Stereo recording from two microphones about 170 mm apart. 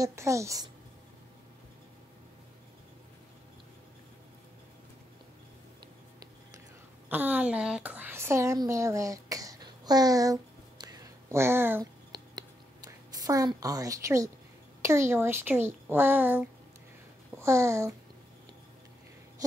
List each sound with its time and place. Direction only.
0.0 s speech: 15° right (ahead or behind)
7.1 s a woman's voice: 10° right (ahead or behind)
12.1 s whispering: 20° right (ahead or behind)
14.8 s speech: 15° right (ahead or behind)